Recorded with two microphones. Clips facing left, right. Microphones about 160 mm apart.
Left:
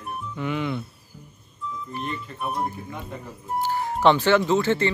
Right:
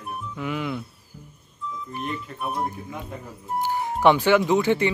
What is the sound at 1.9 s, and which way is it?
Speech, 10° right (ahead or behind).